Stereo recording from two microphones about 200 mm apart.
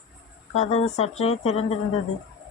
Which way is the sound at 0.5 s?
35° left (ahead or behind).